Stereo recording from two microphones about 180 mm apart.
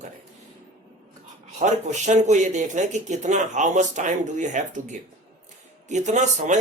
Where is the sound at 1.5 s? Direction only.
40° right (ahead or behind).